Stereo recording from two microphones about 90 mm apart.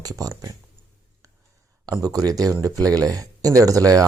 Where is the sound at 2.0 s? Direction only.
45° right (ahead or behind).